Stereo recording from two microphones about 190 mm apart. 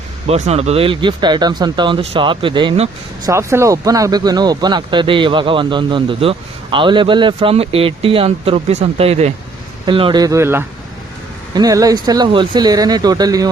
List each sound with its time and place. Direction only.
0.3 s speech: 35° right (ahead or behind)
3.2 s speech: 15° right (ahead or behind)